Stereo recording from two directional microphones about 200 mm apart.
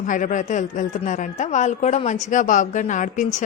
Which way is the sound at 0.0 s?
40° left (ahead or behind).